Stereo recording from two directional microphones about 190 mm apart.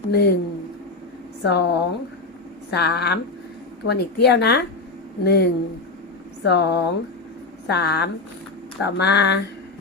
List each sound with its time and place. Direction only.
0.1 s speech: 60° left (ahead or behind)
1.4 s speech: 60° left (ahead or behind)